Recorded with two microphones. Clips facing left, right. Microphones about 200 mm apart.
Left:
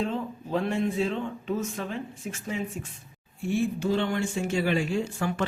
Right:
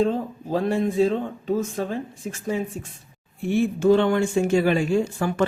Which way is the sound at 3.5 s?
55° right (ahead or behind).